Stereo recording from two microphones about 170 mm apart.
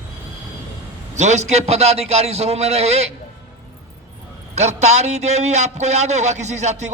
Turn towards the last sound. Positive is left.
turn(degrees=-40)  # may be behind; listen again after turning